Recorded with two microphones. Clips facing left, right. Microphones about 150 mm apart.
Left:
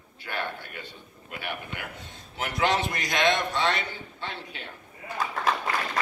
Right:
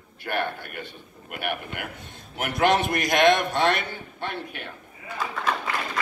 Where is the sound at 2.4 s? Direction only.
55° right (ahead or behind).